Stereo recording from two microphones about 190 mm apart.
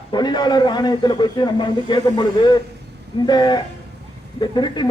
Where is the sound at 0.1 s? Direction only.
25° left (ahead or behind).